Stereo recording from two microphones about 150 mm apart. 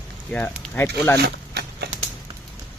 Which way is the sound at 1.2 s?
90° right.